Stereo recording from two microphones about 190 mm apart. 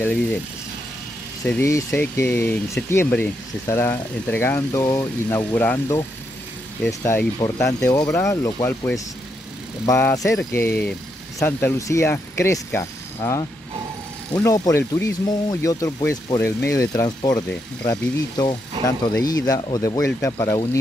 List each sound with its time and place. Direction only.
1.4 s speech: 15° left (ahead or behind)